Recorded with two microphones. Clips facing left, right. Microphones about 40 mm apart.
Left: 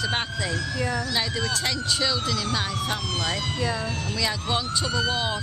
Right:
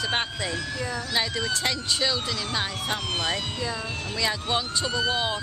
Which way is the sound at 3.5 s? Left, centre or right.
Left.